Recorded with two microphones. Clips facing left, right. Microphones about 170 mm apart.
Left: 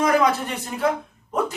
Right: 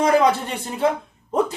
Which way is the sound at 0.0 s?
30° right (ahead or behind).